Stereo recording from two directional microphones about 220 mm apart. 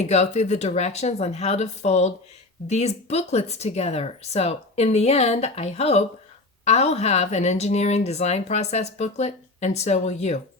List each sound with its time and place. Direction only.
0.0 s speech: 30° left (ahead or behind)